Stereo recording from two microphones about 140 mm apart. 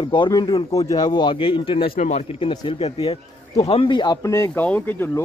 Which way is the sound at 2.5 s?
35° left (ahead or behind).